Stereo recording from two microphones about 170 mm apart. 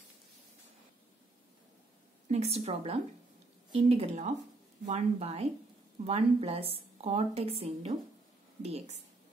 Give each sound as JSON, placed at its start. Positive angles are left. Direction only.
{"t": 2.2, "sound": "a woman's voice", "side_deg": -40}